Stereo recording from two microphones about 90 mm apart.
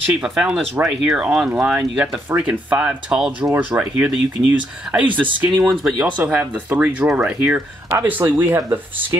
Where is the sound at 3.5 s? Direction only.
20° right (ahead or behind).